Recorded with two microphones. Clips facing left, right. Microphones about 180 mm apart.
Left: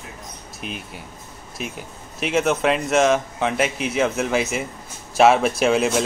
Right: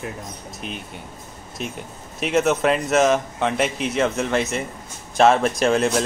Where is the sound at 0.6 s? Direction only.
5° left (ahead or behind).